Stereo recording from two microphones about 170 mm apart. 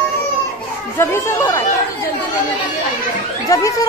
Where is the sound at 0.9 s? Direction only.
15° left (ahead or behind).